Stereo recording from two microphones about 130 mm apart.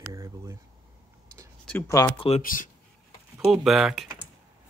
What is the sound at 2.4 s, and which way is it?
Speech, 90° left.